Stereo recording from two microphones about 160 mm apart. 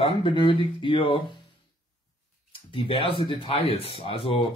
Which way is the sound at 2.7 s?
30° left (ahead or behind).